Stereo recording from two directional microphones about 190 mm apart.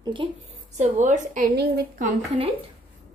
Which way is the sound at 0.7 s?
40° right (ahead or behind).